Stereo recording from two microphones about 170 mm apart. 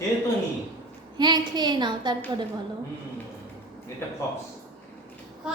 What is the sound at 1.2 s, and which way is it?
Speech, 25° right (ahead or behind).